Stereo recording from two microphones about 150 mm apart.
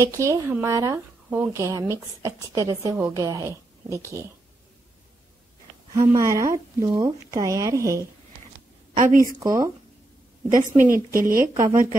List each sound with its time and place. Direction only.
0.1 s speech: 20° right (ahead or behind)
5.9 s speech: 20° right (ahead or behind)
9.0 s a woman's voice: 70° right (ahead or behind)
9.4 s speech: 25° right (ahead or behind)
10.5 s a woman's voice: 60° right (ahead or behind)
11.1 s a woman's voice: 15° right (ahead or behind)